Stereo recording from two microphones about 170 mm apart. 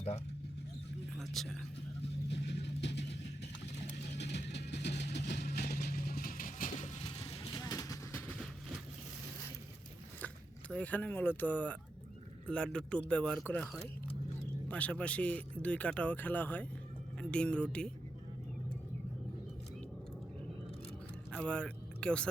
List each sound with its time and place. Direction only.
1.1 s speech: centre (ahead or behind)
2.0 s vehicle: 90° left
3.9 s vehicle: 80° left; by 6.7 s 55° left (ahead or behind)
6.7 s vehicle: 40° left (ahead or behind)
7.0 s vehicle: 25° left (ahead or behind)
8.3 s vehicle: centre (ahead or behind)
10.2 s speech: 10° left (ahead or behind)
14.7 s speech: 10° left (ahead or behind)
21.3 s speech: 5° left (ahead or behind)